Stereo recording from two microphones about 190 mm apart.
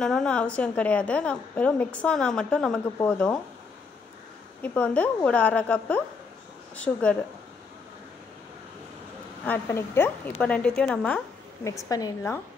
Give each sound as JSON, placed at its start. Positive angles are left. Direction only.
{"t": 0.0, "sound": "a woman's voice", "side_deg": 5}
{"t": 4.6, "sound": "a woman's voice", "side_deg": 5}
{"t": 9.4, "sound": "a woman's voice", "side_deg": 10}
{"t": 11.9, "sound": "a woman's voice", "side_deg": 15}